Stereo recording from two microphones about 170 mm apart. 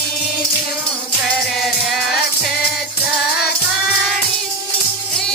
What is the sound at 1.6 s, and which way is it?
Music, centre (ahead or behind).